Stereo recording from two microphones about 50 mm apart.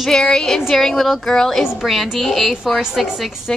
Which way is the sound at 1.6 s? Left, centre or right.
Centre.